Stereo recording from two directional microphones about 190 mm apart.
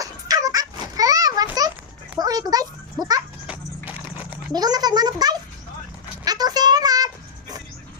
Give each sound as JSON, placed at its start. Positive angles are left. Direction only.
{"t": 0.0, "sound": "a sound", "side_deg": -20}
{"t": 2.1, "sound": "a child's voice", "side_deg": -20}
{"t": 3.4, "sound": "horse", "side_deg": -5}
{"t": 4.5, "sound": "a child's voice", "side_deg": -20}
{"t": 6.2, "sound": "child singing", "side_deg": -20}